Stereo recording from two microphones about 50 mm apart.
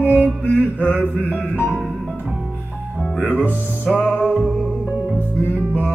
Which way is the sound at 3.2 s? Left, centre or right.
Left.